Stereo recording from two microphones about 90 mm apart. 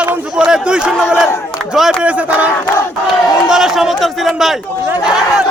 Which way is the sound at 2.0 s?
15° right (ahead or behind).